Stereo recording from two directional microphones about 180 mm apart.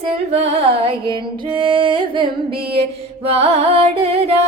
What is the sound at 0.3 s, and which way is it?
Music, 35° right (ahead or behind).